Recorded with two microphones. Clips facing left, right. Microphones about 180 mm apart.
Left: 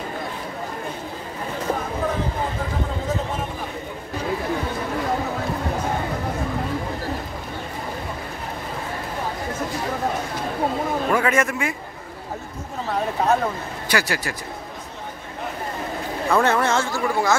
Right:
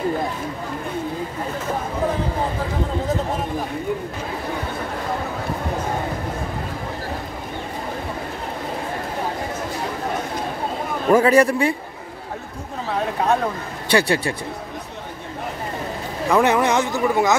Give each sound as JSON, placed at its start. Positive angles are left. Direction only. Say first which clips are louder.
{"t": 11.1, "sound": "a man's voice", "louder": "right 8 dB", "side_deg": -35}
{"t": 13.8, "sound": "speech", "louder": "right 6 dB", "side_deg": -30}
{"t": 16.3, "sound": "speech", "louder": "right 2 dB", "side_deg": -15}